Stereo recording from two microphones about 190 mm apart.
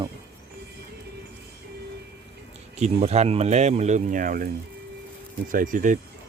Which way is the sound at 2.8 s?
35° right (ahead or behind).